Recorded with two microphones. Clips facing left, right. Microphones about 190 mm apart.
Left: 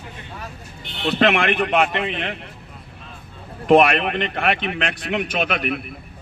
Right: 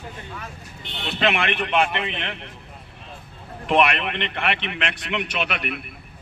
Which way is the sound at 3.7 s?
40° left (ahead or behind).